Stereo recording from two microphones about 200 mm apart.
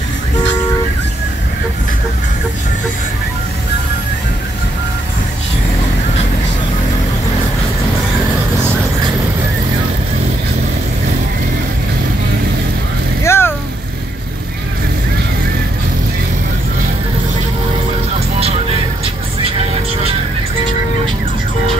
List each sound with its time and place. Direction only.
13.2 s vehicle: 15° left (ahead or behind)